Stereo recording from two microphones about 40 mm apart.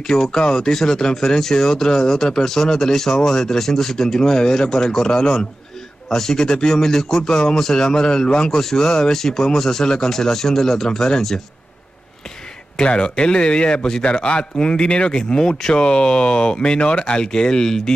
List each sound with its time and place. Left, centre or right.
0.4 s speech: centre
6.0 s speech: centre
9.1 s speech: centre
12.7 s speech: left